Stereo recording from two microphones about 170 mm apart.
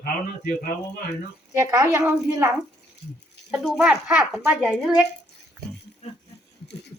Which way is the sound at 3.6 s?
5° right (ahead or behind).